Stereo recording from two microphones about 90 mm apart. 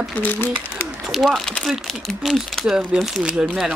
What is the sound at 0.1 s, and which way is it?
Speech, 20° left (ahead or behind).